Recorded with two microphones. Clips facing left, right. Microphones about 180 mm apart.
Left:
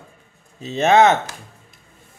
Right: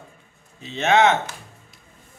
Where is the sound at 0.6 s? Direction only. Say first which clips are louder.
Left 4 dB; 40° left (ahead or behind).